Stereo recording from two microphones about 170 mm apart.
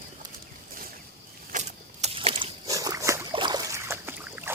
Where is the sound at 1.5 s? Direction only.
45° right (ahead or behind).